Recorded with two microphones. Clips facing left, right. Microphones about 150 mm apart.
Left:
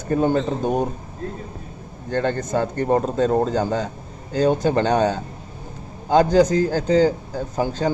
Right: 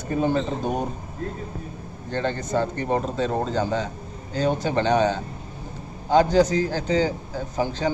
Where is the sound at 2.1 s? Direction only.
50° left (ahead or behind).